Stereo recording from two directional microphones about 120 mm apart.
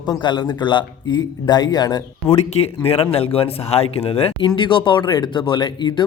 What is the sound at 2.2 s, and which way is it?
Speech, 60° left (ahead or behind).